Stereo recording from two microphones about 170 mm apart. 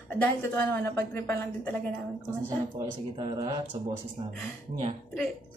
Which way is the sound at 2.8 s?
20° right (ahead or behind).